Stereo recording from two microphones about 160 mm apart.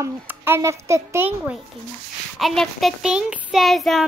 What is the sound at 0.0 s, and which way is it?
A child's voice, 15° right (ahead or behind).